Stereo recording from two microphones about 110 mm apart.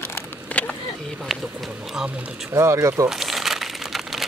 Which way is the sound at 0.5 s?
15° left (ahead or behind).